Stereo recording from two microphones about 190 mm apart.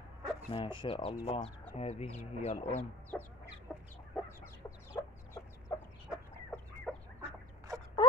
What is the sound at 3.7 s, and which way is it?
Chicken, centre (ahead or behind).